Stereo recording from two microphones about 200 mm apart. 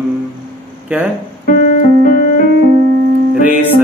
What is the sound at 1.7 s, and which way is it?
Music, 40° left (ahead or behind).